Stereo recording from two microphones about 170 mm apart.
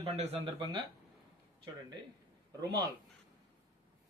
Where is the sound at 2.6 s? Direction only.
20° right (ahead or behind).